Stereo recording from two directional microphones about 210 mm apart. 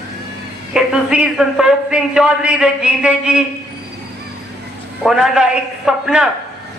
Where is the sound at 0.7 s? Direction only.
5° right (ahead or behind).